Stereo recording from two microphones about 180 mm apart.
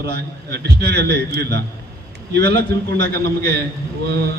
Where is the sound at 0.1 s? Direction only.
65° right (ahead or behind).